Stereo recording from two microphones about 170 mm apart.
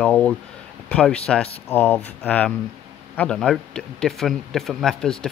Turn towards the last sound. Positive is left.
turn(degrees=5)  # may be behind; listen again after turning